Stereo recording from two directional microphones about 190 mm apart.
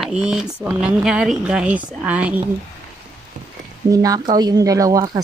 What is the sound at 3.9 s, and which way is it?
Speech, 20° right (ahead or behind).